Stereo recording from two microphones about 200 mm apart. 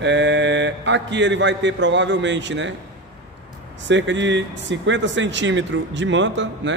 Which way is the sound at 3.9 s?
65° right (ahead or behind).